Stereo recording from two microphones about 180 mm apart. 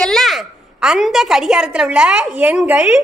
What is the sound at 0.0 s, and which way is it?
A woman's voice, centre (ahead or behind).